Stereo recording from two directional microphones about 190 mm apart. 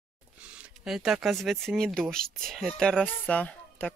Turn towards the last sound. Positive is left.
turn(degrees=5)  # may be behind; listen again after turning